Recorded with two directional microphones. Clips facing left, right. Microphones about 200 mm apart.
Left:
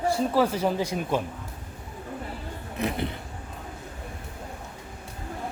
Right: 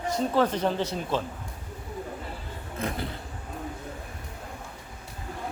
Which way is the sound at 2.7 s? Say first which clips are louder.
Left 3 dB; 20° left (ahead or behind).